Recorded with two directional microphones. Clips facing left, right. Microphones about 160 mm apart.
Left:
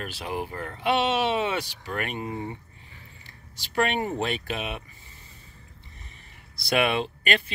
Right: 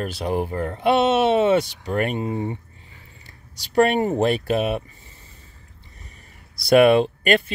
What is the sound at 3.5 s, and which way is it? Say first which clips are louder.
Speech: right 8 dB; 40° right (ahead or behind).